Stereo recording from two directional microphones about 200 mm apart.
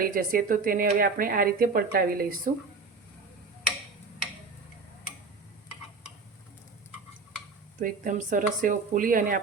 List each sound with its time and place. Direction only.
0.0 s speech: 45° right (ahead or behind)
7.8 s speech: 45° right (ahead or behind)